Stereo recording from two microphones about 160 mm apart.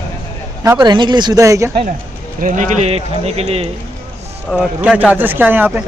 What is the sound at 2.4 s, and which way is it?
Speech, 55° right (ahead or behind).